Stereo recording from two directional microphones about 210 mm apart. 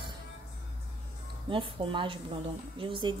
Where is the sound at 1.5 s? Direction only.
25° right (ahead or behind).